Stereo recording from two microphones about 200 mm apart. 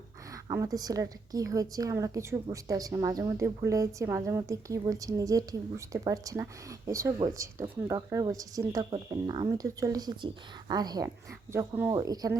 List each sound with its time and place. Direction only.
0.4 s a woman's voice: 15° right (ahead or behind)